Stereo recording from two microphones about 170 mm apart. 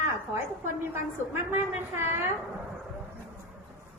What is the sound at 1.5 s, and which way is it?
Speech, 10° right (ahead or behind).